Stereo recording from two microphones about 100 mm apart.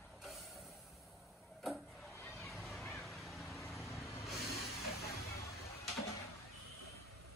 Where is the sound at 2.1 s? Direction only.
30° left (ahead or behind).